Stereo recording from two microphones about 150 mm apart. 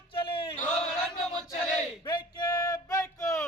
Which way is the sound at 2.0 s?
30° left (ahead or behind).